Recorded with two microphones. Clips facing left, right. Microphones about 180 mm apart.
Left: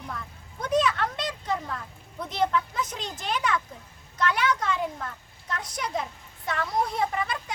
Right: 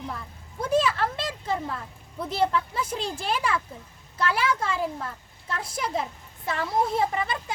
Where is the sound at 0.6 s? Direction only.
30° right (ahead or behind).